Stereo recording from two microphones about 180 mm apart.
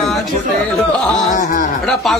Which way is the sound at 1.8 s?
Centre (ahead or behind).